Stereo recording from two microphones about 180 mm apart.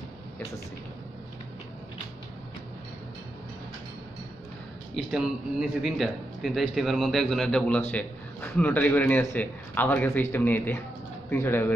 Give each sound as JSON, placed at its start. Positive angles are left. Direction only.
{"t": 4.9, "sound": "a man's voice", "side_deg": -5}